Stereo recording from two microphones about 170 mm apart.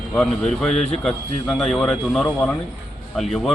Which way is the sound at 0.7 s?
40° left (ahead or behind).